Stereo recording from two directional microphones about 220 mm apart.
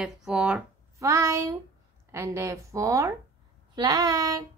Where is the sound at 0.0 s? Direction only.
5° right (ahead or behind).